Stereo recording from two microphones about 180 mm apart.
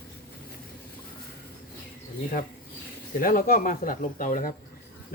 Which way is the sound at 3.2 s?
50° left (ahead or behind).